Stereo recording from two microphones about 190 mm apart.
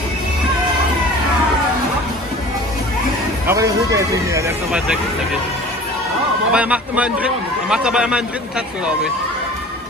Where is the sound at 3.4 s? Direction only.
20° right (ahead or behind).